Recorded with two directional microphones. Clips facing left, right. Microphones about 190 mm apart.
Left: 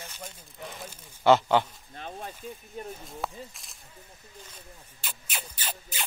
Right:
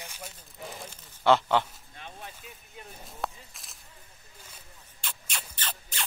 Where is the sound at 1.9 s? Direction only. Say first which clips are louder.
Left 6 dB; 45° left (ahead or behind).